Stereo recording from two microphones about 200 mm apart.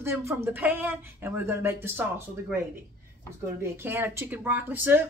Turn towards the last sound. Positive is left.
turn(degrees=-10)  # may be behind; listen again after turning